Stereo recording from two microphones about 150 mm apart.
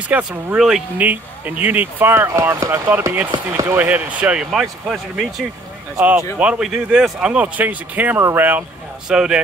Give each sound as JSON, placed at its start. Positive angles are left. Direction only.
{"t": 0.3, "sound": "speech", "side_deg": -5}
{"t": 3.3, "sound": "speech", "side_deg": -25}
{"t": 3.7, "sound": "speech", "side_deg": -10}